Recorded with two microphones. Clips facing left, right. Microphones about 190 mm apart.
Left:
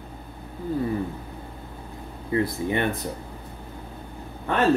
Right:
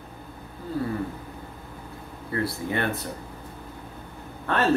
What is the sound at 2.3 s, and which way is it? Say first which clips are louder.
Speech: left 4 dB; 20° left (ahead or behind).